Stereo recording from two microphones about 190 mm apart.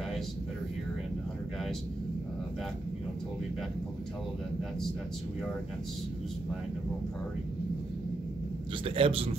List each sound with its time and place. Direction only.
8.8 s a man's voice: 30° right (ahead or behind)